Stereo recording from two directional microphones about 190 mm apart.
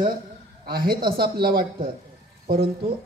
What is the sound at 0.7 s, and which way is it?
A man's voice, 55° right (ahead or behind).